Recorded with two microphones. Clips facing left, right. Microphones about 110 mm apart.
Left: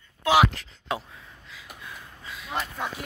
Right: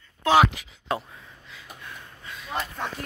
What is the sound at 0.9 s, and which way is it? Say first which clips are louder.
Gasp: right 2 dB; centre (ahead or behind).